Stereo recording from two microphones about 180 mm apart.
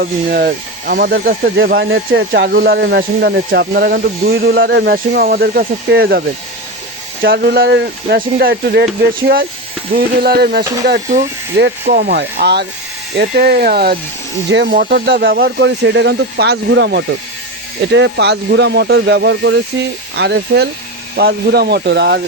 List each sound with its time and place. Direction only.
0.0 s speech: 60° right (ahead or behind); by 19.6 s 80° right
20.1 s speech: 70° right (ahead or behind)